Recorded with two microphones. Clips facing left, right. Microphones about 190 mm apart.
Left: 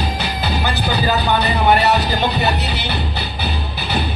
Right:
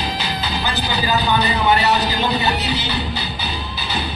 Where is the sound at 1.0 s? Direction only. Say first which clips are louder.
Even; 60° left (ahead or behind).